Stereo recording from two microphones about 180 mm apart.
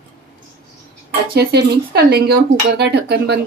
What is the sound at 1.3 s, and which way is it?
Speech, 65° right (ahead or behind).